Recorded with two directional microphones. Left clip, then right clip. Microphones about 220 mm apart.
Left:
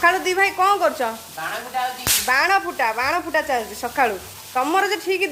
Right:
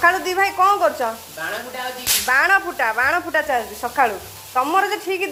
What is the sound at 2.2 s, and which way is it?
Speech, 20° left (ahead or behind).